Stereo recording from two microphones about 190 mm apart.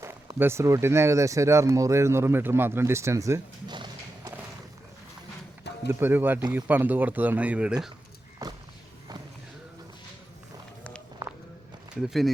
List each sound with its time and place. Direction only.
0.0 s speech: 15° right (ahead or behind)
5.9 s speech: 10° right (ahead or behind)
8.4 s a sound: 20° right (ahead or behind)
11.9 s speech: centre (ahead or behind)